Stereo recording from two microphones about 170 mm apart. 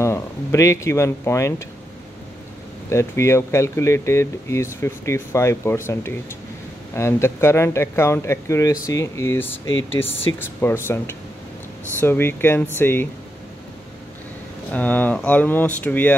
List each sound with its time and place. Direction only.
0.0 s speech: 15° left (ahead or behind)
2.9 s speech: 15° left (ahead or behind)
14.7 s speech: 10° left (ahead or behind)